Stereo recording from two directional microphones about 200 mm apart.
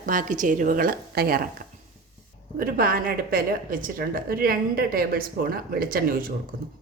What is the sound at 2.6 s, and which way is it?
A woman's voice, 45° right (ahead or behind).